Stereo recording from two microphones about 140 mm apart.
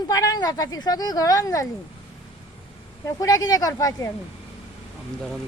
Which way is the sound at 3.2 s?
25° left (ahead or behind).